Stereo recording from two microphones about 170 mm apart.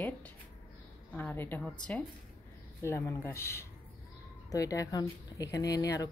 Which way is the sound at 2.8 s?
15° left (ahead or behind).